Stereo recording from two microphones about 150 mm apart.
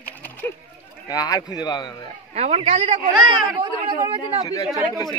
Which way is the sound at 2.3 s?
45° right (ahead or behind).